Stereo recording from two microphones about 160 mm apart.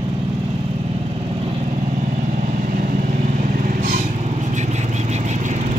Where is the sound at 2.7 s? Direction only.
55° right (ahead or behind).